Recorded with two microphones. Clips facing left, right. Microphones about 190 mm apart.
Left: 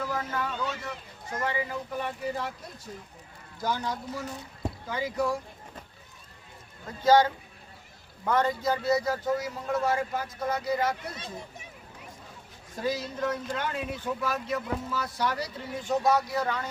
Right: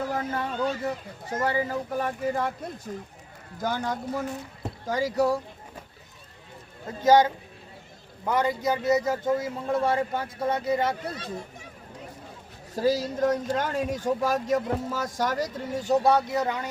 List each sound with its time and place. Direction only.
0.1 s a sound: 30° right (ahead or behind)
0.7 s speech: 35° right (ahead or behind)
1.5 s speech: 40° right (ahead or behind)
3.6 s speech: 50° right (ahead or behind)
4.9 s speech: 40° right (ahead or behind)
5.1 s speech: 70° right (ahead or behind)
6.8 s a man's voice: 20° right (ahead or behind)
12.7 s speech: 40° right (ahead or behind); by 16.6 s 20° right (ahead or behind)